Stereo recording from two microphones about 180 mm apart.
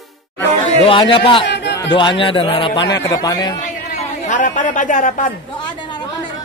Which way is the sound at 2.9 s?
20° left (ahead or behind).